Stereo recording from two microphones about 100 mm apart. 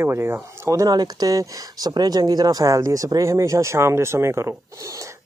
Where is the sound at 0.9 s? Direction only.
40° right (ahead or behind).